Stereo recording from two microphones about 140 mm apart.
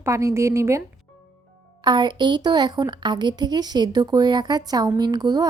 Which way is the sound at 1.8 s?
35° right (ahead or behind).